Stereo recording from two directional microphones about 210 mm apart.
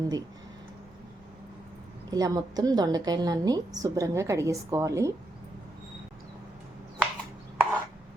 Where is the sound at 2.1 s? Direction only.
15° right (ahead or behind).